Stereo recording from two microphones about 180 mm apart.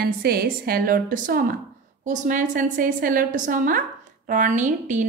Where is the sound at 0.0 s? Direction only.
60° right (ahead or behind).